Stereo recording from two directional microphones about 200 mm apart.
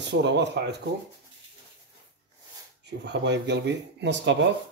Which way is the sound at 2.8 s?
60° right (ahead or behind).